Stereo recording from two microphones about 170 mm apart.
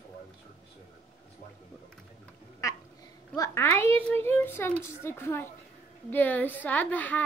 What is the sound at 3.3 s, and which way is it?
A child's voice, 20° left (ahead or behind).